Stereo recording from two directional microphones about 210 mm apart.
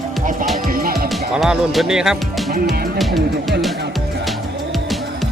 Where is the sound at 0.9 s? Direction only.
Centre (ahead or behind).